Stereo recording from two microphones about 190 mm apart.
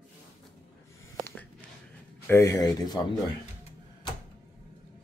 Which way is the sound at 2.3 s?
15° left (ahead or behind).